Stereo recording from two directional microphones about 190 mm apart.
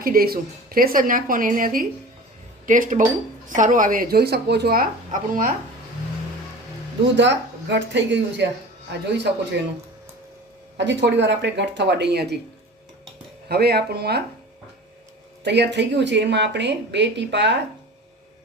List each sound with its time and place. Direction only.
0.0 s speech: 50° right (ahead or behind)
7.2 s a woman's voice: 70° right (ahead or behind)
10.8 s speech: 70° right (ahead or behind)
13.5 s speech: 55° right (ahead or behind)
15.4 s speech: 65° right (ahead or behind)